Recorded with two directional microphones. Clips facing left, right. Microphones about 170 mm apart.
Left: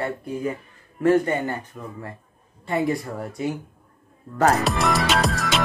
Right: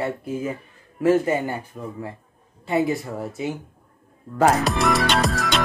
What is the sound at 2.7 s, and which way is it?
Speech, centre (ahead or behind).